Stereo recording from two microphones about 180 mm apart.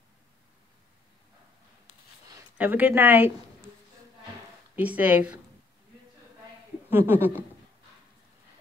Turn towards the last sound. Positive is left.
turn(degrees=-10)  # may be behind; listen again after turning